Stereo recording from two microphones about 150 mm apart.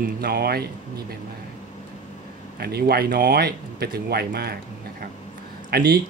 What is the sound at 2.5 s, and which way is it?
Speech, 90° right.